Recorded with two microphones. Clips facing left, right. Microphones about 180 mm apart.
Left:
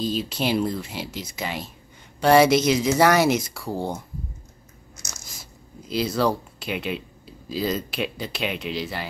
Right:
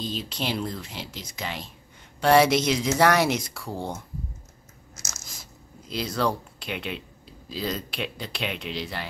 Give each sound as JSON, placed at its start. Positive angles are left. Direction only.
{"t": 0.0, "sound": "speech", "side_deg": 5}
{"t": 5.9, "sound": "speech", "side_deg": 5}